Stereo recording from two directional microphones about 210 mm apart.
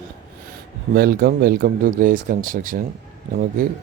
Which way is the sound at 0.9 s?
45° right (ahead or behind).